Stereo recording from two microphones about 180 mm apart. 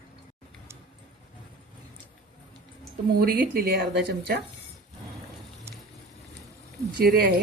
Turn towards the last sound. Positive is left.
turn(degrees=-60)  # may be behind; listen again after turning